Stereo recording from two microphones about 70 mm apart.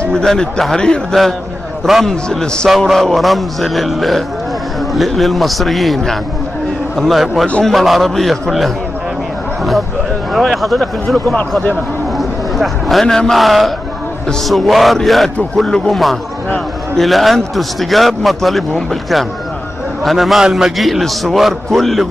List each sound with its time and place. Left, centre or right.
0.1 s a man's voice: centre
1.9 s a man's voice: centre
2.2 s a man's voice: centre
10.3 s a man's voice: centre
12.2 s a sound: centre
13.0 s a man's voice: centre
16.4 s a man's voice: centre
17.0 s a man's voice: centre
20.1 s a man's voice: centre